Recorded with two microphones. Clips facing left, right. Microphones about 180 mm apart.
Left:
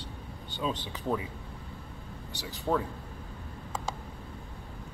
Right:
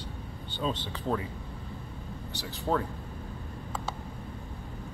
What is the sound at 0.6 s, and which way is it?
Speech, 10° left (ahead or behind).